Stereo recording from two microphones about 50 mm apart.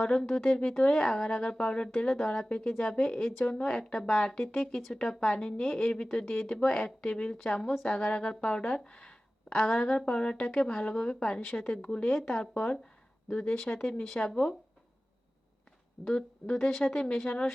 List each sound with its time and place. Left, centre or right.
0.0 s speech: centre
14.2 s speech: left
16.1 s speech: centre